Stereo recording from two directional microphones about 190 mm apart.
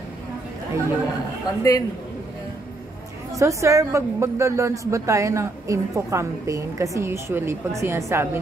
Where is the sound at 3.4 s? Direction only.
15° right (ahead or behind).